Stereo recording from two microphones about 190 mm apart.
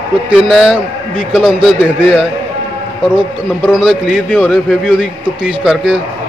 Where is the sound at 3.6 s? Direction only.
5° right (ahead or behind).